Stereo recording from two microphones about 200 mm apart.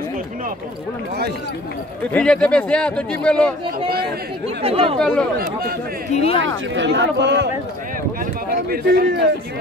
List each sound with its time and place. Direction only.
2.1 s speech: 5° left (ahead or behind)
4.6 s speech: 30° right (ahead or behind)
4.9 s speech: 5° left (ahead or behind)
5.4 s speech: 50° right (ahead or behind)
6.1 s speech: 30° left (ahead or behind)
6.4 s speech: 65° right (ahead or behind)
8.6 s speech: 55° right (ahead or behind)